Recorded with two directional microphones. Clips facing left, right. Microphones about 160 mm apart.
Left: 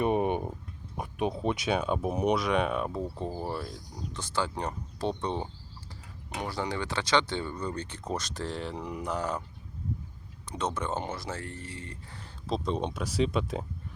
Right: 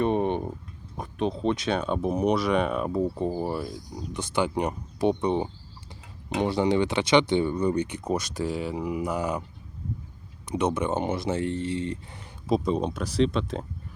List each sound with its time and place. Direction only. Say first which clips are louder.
0.0 s a sound: right 2 dB; 10° left (ahead or behind)
0.9 s speech: right 3 dB; 10° left (ahead or behind); by 4.2 s 5° right (ahead or behind)
4.2 s speech: right 6 dB; 15° right (ahead or behind)
10.4 s speech: right 7 dB; 15° right (ahead or behind); by 13.7 s 5° left (ahead or behind)